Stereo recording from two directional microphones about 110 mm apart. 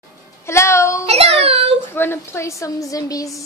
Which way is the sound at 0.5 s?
25° left (ahead or behind).